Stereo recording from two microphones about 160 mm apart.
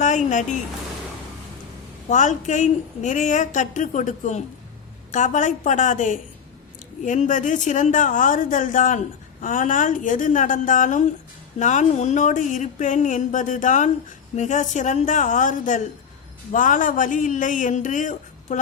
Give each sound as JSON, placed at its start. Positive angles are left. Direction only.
{"t": 2.0, "sound": "a woman's voice", "side_deg": 50}